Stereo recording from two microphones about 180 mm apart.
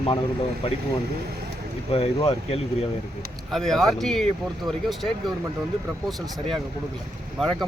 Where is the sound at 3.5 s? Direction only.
Centre (ahead or behind).